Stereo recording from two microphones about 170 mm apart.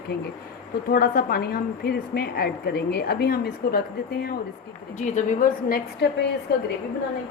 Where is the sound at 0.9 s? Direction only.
60° left (ahead or behind).